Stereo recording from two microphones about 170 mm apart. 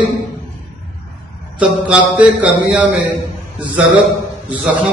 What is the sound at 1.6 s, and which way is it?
A man's voice, 5° right (ahead or behind).